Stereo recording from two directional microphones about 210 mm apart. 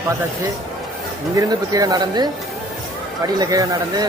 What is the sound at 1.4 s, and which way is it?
Speech, 15° right (ahead or behind).